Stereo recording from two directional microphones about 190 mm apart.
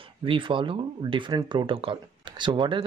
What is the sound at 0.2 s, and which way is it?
Speech, 25° right (ahead or behind).